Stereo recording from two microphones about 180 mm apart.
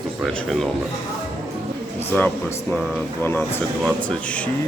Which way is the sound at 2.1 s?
10° left (ahead or behind).